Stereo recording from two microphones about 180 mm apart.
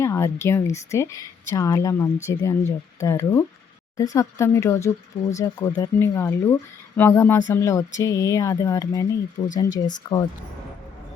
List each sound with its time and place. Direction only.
0.0 s speech: 15° left (ahead or behind)